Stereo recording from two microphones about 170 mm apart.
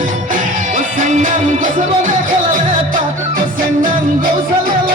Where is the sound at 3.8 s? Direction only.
55° right (ahead or behind).